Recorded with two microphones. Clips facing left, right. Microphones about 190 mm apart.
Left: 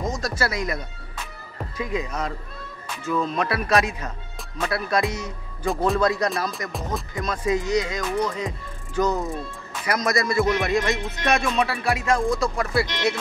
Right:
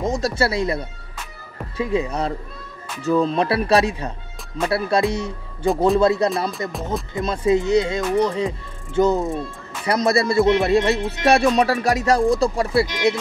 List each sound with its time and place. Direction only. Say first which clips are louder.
0.0 s speech: right 5 dB; 25° right (ahead or behind)
6.7 s music: right 3 dB; centre (ahead or behind)
7.2 s speech: right 6 dB; 30° right (ahead or behind)
12.8 s speech: right 4 dB; 15° right (ahead or behind)